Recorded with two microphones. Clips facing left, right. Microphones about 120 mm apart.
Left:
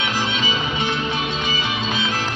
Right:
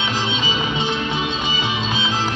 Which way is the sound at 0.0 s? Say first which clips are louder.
Even; 20° right (ahead or behind).